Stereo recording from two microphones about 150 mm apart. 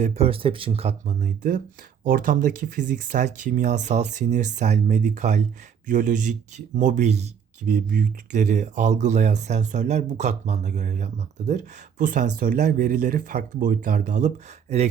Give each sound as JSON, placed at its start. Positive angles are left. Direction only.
{"t": 0.0, "sound": "speech", "side_deg": -45}
{"t": 7.7, "sound": "speech", "side_deg": -70}